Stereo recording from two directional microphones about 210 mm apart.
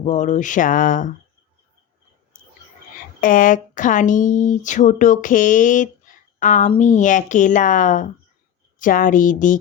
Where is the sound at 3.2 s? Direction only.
40° left (ahead or behind).